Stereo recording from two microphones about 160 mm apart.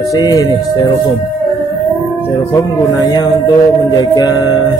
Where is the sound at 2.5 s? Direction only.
25° left (ahead or behind).